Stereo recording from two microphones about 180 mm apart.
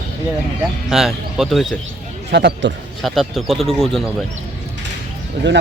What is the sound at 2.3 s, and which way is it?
Speech, 75° right (ahead or behind).